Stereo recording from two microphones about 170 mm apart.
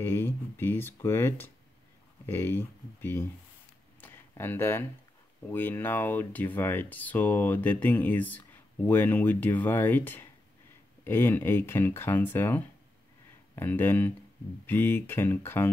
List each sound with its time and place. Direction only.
0.0 s speech: 15° left (ahead or behind)
4.0 s a sound: 10° left (ahead or behind)
5.5 s speech: 10° left (ahead or behind)